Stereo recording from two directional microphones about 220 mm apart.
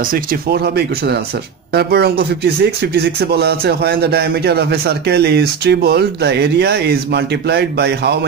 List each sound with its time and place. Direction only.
0.1 s a man's voice: 45° right (ahead or behind)